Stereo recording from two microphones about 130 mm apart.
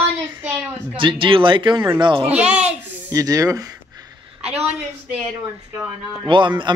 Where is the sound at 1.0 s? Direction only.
40° right (ahead or behind).